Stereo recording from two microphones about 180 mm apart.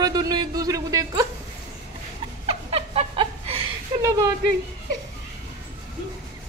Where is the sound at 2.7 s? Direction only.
35° right (ahead or behind).